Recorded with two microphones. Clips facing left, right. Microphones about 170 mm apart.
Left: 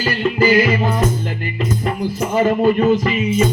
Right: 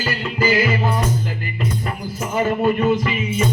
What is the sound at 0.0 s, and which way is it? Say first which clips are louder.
Music: left 5 dB; 40° left (ahead or behind).